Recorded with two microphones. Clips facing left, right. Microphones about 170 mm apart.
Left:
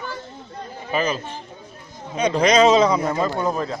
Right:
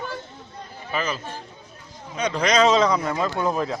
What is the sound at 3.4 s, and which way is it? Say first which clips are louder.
Speech: even; centre (ahead or behind).